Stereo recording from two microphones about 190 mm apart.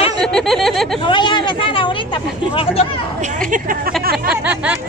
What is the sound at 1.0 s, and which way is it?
Speech, 25° left (ahead or behind).